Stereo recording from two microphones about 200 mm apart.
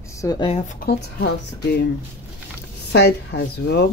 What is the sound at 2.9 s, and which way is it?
Speech, 55° left (ahead or behind).